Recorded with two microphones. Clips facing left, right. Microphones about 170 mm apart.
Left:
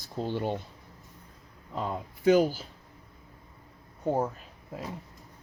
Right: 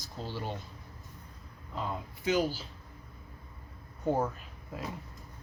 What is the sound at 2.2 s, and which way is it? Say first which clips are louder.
Speech: left 7 dB; 50° left (ahead or behind).